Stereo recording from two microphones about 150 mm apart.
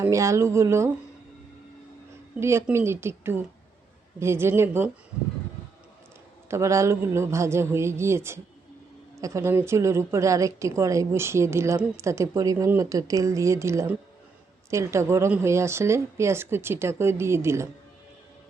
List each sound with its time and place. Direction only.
0.0 s a woman's voice: 20° right (ahead or behind)
2.4 s a woman's voice: 20° right (ahead or behind)
6.5 s a woman's voice: 20° right (ahead or behind)